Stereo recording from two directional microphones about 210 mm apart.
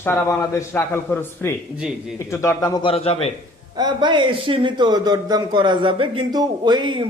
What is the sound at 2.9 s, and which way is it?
Speech, 30° left (ahead or behind).